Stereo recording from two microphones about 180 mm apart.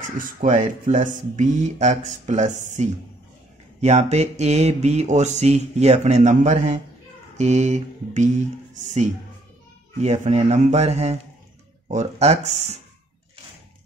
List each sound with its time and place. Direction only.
0.0 s speech: 45° right (ahead or behind)